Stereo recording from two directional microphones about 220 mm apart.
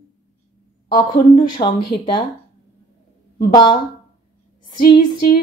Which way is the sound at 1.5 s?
20° left (ahead or behind).